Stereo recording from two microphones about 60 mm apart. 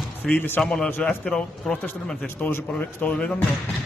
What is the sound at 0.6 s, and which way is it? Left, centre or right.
A man's voice, centre.